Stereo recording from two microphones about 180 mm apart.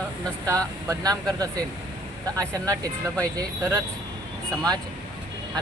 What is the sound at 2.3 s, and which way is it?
Speech, 20° right (ahead or behind).